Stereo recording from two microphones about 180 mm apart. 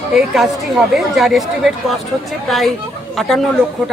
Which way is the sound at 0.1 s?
Centre (ahead or behind).